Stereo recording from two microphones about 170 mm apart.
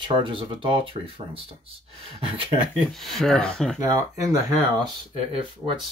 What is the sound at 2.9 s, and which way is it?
Speech, centre (ahead or behind).